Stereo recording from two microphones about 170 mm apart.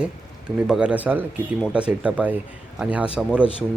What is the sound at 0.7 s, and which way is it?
A man's voice, 5° right (ahead or behind).